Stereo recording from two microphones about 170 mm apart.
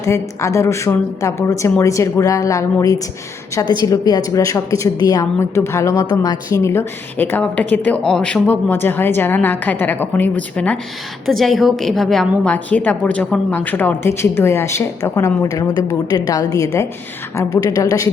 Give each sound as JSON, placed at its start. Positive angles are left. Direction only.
{"t": 0.0, "sound": "a woman's voice", "side_deg": 15}